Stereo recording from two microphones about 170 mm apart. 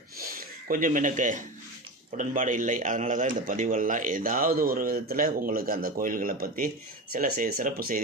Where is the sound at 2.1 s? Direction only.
50° right (ahead or behind).